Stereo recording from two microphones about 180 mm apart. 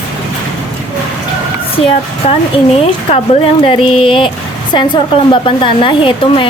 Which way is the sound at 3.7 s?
30° left (ahead or behind).